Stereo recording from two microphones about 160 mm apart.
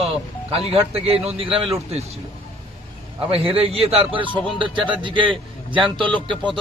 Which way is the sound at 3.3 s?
35° right (ahead or behind).